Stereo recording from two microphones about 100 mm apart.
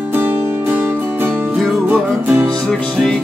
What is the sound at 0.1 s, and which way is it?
Music, 20° right (ahead or behind).